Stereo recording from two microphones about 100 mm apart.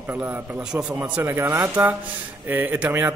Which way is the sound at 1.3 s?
30° right (ahead or behind).